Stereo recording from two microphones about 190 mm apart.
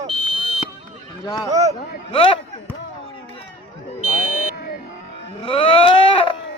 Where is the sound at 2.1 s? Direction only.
30° left (ahead or behind).